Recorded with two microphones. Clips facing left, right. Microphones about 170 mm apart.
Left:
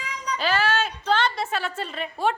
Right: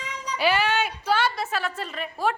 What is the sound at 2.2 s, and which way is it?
Speech, 25° left (ahead or behind).